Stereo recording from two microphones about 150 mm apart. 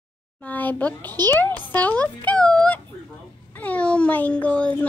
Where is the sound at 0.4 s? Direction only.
10° left (ahead or behind).